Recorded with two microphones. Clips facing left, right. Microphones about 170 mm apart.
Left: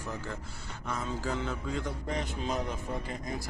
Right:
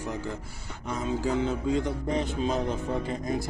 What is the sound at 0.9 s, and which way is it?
Speech, 20° right (ahead or behind).